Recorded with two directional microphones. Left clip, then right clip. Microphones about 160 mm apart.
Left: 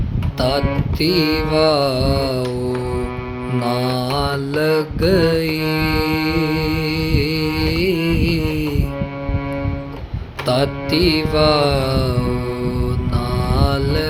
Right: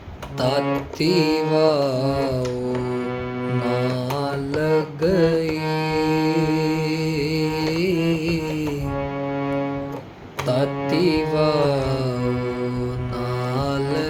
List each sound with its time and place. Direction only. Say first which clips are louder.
0.3 s speech: left 3 dB; 20° left (ahead or behind)
0.9 s mantra: left 3 dB; 20° left (ahead or behind)
3.6 s mantra: left 4 dB; 30° left (ahead or behind)
6.1 s music: left 1 dB; 25° left (ahead or behind)
10.4 s mantra: left 3 dB; 30° left (ahead or behind)
13.5 s mantra: left 4 dB; 20° left (ahead or behind)